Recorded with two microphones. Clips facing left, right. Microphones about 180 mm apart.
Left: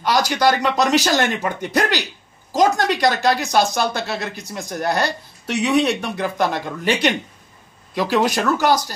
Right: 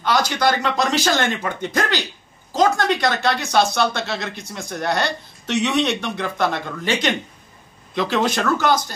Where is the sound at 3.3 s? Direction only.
35° left (ahead or behind).